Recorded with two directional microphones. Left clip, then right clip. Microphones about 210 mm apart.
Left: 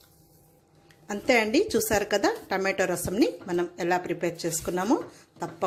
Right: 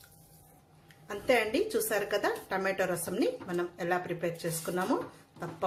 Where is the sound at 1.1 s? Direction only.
30° left (ahead or behind).